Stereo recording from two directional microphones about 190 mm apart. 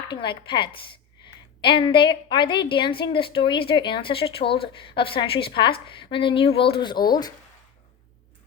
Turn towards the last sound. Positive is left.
turn(degrees=20)  # may be behind; listen again after turning